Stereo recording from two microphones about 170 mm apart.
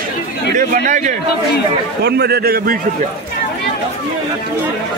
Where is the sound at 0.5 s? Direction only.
50° right (ahead or behind).